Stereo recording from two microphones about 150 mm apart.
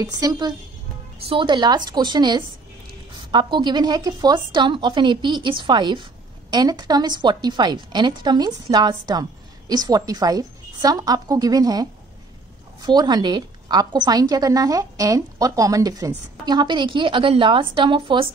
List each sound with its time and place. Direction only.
0.0 s a woman's voice: 25° right (ahead or behind)